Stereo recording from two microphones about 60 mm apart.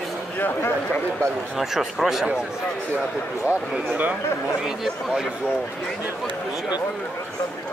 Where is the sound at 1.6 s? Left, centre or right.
Centre.